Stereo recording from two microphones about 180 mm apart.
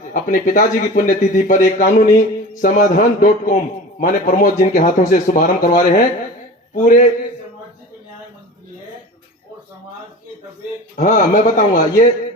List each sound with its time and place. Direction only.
0.1 s speech: 45° left (ahead or behind)
10.9 s speech: 45° left (ahead or behind)